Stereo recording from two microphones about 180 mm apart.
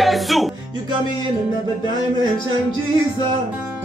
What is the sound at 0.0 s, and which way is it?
Music, centre (ahead or behind).